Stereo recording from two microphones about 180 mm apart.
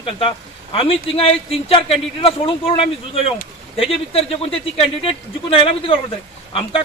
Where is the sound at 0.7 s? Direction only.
30° left (ahead or behind).